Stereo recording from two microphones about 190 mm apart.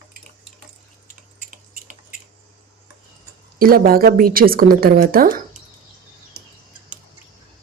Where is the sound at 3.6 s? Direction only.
50° right (ahead or behind).